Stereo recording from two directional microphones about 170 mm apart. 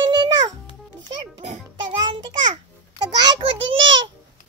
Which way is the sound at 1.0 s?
45° right (ahead or behind).